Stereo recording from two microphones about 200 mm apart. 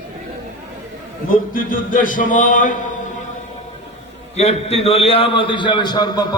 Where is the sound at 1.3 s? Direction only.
45° left (ahead or behind).